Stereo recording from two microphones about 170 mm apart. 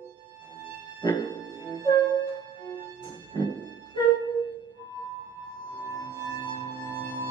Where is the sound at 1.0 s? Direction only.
25° left (ahead or behind).